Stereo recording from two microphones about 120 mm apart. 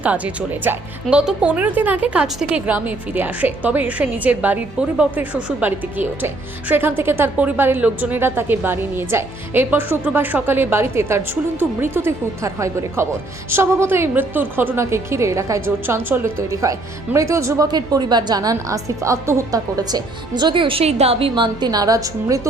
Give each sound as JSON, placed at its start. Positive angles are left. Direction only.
{"t": 0.7, "sound": "a woman's voice", "side_deg": -15}
{"t": 17.7, "sound": "a woman's voice", "side_deg": -35}